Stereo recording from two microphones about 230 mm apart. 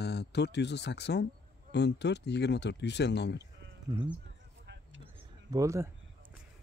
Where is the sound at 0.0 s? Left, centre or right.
Left.